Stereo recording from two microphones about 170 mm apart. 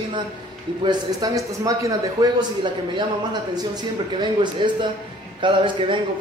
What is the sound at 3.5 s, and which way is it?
A man's voice, 25° right (ahead or behind).